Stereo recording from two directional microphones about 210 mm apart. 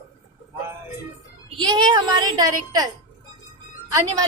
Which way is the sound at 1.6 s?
20° right (ahead or behind).